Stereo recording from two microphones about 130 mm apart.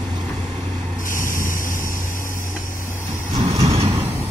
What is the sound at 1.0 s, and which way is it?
Vehicle, 90° left.